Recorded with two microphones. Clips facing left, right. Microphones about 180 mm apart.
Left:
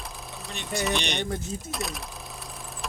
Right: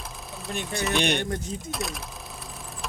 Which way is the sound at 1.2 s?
5° left (ahead or behind).